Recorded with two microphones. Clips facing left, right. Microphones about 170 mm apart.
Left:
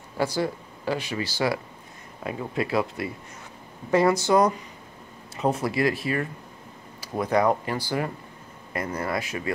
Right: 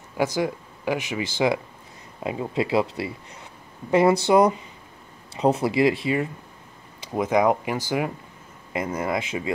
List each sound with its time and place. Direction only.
0.2 s speech: 15° right (ahead or behind)
5.6 s speech: 25° right (ahead or behind)
7.2 s speech: 15° right (ahead or behind)